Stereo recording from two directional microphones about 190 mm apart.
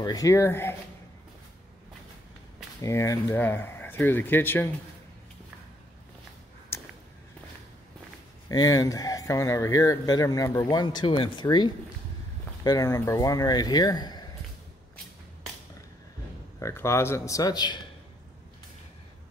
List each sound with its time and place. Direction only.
0.0 s speech: 20° left (ahead or behind)
2.8 s speech: 15° left (ahead or behind)
6.7 s a sound: 15° left (ahead or behind)
8.5 s speech: 20° left (ahead or behind)
16.5 s speech: 15° left (ahead or behind)